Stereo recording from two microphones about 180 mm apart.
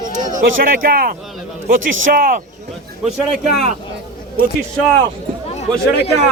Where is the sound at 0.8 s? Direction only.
55° right (ahead or behind).